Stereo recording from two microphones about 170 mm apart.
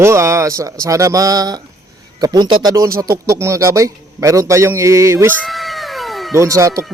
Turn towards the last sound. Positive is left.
turn(degrees=-15)  # may be behind; listen again after turning